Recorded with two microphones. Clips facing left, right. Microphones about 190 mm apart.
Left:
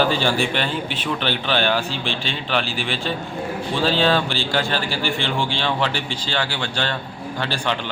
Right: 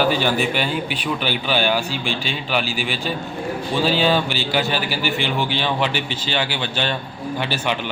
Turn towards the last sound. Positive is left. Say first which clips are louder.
# right 1 dB
turn(degrees=-15)  # may be behind; listen again after turning